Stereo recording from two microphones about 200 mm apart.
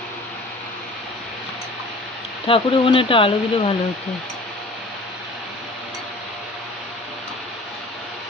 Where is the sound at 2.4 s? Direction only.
25° left (ahead or behind).